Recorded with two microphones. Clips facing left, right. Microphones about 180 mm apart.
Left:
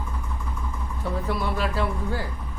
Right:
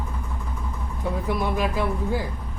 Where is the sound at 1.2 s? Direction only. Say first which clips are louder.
Right 3 dB; 15° right (ahead or behind).